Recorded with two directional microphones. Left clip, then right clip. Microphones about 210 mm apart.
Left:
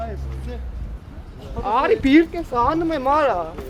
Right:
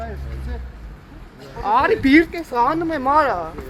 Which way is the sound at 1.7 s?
35° right (ahead or behind).